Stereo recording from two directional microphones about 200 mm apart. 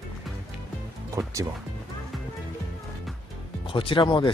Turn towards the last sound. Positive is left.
turn(degrees=25)  # may be behind; listen again after turning